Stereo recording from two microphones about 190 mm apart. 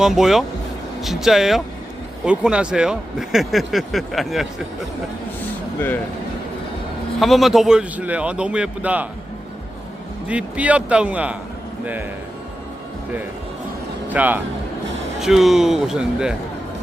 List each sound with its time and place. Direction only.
0.0 s speech: centre (ahead or behind)
7.2 s speech: centre (ahead or behind)
10.2 s a man's voice: 5° right (ahead or behind)
14.1 s a man's voice: 10° right (ahead or behind)